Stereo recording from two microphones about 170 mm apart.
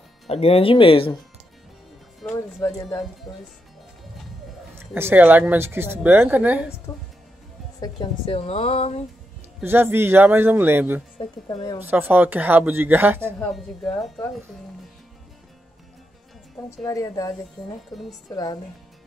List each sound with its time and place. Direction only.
0.3 s speech: 35° left (ahead or behind)
2.2 s music: 5° left (ahead or behind)
4.7 s speech: 15° right (ahead or behind)
7.8 s speech: 30° left (ahead or behind)
9.6 s speech: 10° right (ahead or behind)
11.1 s speech: 25° left (ahead or behind)
11.8 s speech: 10° right (ahead or behind)
13.9 s speech: centre (ahead or behind)
16.8 s speech: 20° left (ahead or behind)